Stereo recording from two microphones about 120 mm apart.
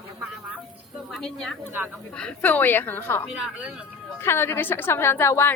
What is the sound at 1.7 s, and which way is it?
Speech, 15° right (ahead or behind).